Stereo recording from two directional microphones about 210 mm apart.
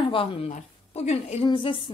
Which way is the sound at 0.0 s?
25° left (ahead or behind).